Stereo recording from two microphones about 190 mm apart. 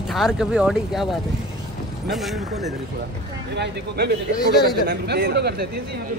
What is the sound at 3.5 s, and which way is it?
Speech, 60° right (ahead or behind).